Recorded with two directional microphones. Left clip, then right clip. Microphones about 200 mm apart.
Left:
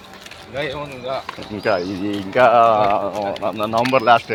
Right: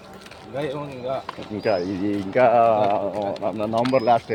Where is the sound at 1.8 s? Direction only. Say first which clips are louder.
Left 1 dB; centre (ahead or behind).